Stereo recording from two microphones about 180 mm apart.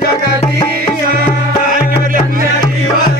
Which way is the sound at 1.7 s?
50° right (ahead or behind).